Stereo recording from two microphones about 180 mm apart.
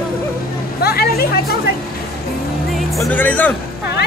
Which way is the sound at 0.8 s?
60° left (ahead or behind).